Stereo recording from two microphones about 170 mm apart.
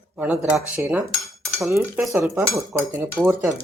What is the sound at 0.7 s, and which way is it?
Cutlery, 15° right (ahead or behind).